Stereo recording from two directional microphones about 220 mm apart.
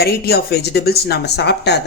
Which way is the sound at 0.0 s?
45° left (ahead or behind).